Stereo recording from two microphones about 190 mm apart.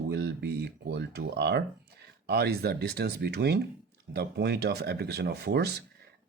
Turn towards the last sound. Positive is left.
turn(degrees=-60)  # may be behind; listen again after turning